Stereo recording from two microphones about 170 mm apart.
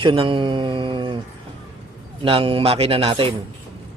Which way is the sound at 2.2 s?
30° right (ahead or behind).